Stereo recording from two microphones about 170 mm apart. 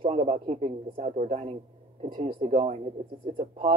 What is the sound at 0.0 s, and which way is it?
A man's voice, 40° right (ahead or behind).